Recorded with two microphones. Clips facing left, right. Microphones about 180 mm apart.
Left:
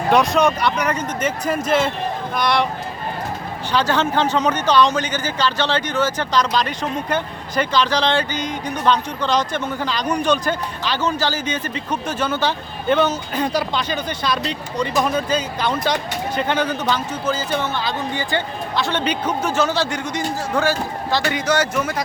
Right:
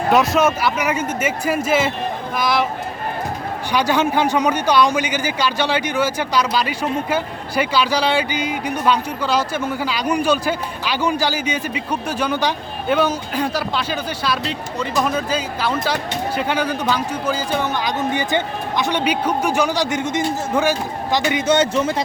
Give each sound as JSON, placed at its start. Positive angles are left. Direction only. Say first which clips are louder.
{"t": 0.1, "sound": "speech", "louder": "even", "side_deg": 0}
{"t": 3.7, "sound": "speech", "louder": "right 1 dB", "side_deg": -10}